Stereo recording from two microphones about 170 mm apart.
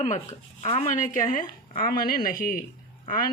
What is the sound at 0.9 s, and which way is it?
Speech, 50° left (ahead or behind).